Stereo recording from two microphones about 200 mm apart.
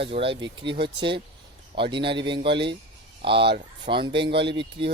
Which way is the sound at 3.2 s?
25° right (ahead or behind).